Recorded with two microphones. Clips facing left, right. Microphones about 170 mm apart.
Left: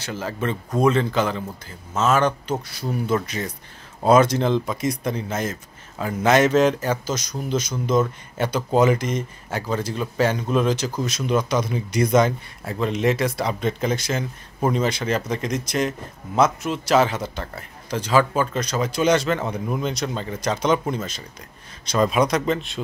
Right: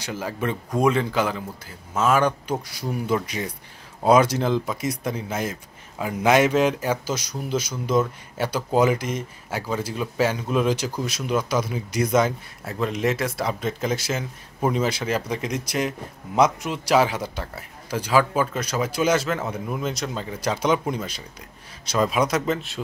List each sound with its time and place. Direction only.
0.0 s speech: 10° right (ahead or behind)